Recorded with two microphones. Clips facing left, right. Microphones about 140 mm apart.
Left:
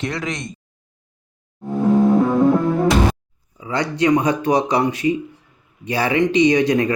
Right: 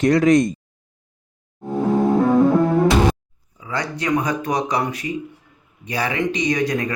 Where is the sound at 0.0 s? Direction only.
45° right (ahead or behind).